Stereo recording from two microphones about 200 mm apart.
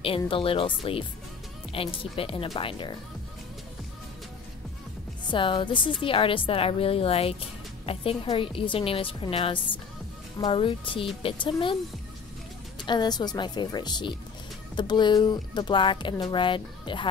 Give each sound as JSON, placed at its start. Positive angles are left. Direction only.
{"t": 0.3, "sound": "speech", "side_deg": 25}
{"t": 5.3, "sound": "speech", "side_deg": 25}
{"t": 12.7, "sound": "speech", "side_deg": 20}